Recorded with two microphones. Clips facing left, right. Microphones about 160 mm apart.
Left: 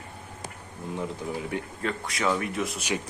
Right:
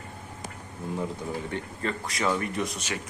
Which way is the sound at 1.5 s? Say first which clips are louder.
Left 1 dB; centre (ahead or behind).